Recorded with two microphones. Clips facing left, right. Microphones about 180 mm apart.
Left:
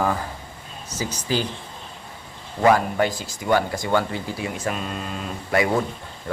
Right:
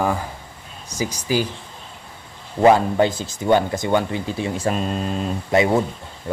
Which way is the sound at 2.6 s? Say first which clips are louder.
Right 4 dB; 25° right (ahead or behind).